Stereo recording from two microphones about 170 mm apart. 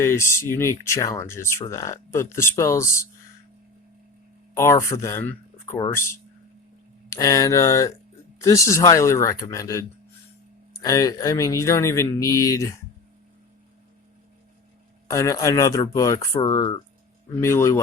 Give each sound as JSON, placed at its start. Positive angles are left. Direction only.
{"t": 0.0, "sound": "speech", "side_deg": 15}
{"t": 4.5, "sound": "speech", "side_deg": 15}
{"t": 15.0, "sound": "speech", "side_deg": 20}